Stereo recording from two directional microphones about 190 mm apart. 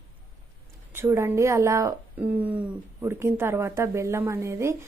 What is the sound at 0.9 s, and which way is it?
Speech, 15° right (ahead or behind).